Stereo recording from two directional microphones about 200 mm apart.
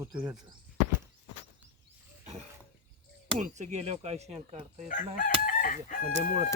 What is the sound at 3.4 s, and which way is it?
Speech, 35° right (ahead or behind).